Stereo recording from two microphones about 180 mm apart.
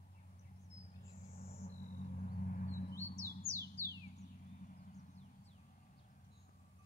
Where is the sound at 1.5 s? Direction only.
45° left (ahead or behind).